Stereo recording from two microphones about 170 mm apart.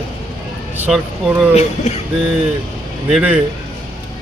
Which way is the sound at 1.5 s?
40° left (ahead or behind).